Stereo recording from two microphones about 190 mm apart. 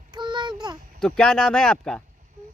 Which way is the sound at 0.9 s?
5° left (ahead or behind).